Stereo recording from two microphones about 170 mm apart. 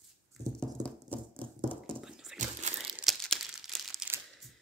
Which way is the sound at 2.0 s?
5° right (ahead or behind).